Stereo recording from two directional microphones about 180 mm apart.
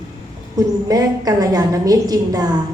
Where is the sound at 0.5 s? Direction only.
20° right (ahead or behind).